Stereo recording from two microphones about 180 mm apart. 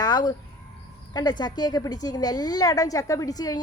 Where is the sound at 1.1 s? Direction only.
25° left (ahead or behind).